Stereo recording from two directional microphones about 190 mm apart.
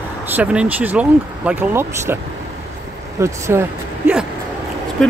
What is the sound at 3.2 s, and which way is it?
Speech, 15° right (ahead or behind).